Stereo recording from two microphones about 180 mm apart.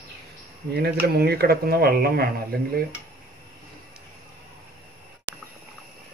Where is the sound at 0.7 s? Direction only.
60° right (ahead or behind).